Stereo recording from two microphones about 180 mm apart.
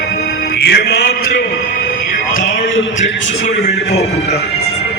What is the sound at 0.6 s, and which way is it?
Speech, 65° left (ahead or behind).